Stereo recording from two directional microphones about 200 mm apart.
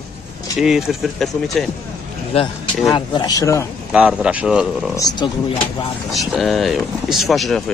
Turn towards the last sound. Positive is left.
turn(degrees=0)  # may be behind; listen again after turning